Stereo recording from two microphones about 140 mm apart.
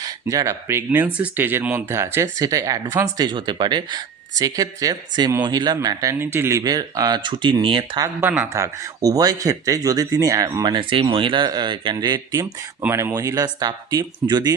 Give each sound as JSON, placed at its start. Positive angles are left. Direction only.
{"t": 0.0, "sound": "speech", "side_deg": -25}
{"t": 8.0, "sound": "speech", "side_deg": -15}
{"t": 12.8, "sound": "speech", "side_deg": -15}